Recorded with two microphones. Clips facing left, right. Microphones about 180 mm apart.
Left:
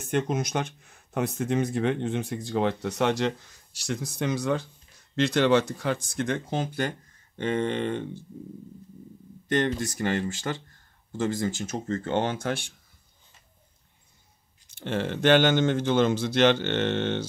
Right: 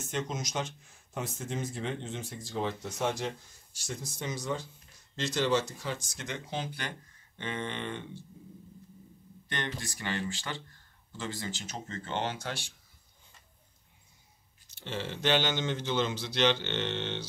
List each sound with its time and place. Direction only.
0.0 s speech: 60° left (ahead or behind)
9.5 s speech: 45° left (ahead or behind)
14.8 s speech: 55° left (ahead or behind)